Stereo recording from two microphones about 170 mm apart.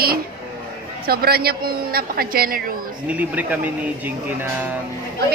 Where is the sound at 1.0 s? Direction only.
65° right (ahead or behind).